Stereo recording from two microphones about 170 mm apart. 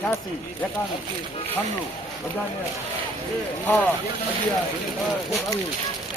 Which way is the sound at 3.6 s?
10° left (ahead or behind).